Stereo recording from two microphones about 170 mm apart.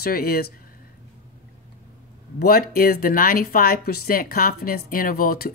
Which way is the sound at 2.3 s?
60° left (ahead or behind).